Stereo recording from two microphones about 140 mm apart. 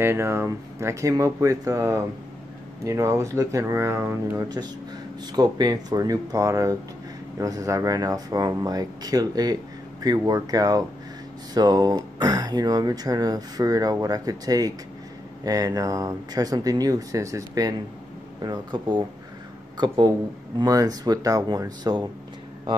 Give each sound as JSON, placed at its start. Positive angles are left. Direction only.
{"t": 0.0, "sound": "speech", "side_deg": -20}
{"t": 5.2, "sound": "speech", "side_deg": -30}
{"t": 20.5, "sound": "speech", "side_deg": -25}